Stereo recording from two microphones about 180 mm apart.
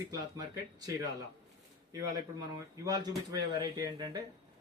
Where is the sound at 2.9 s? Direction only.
20° right (ahead or behind).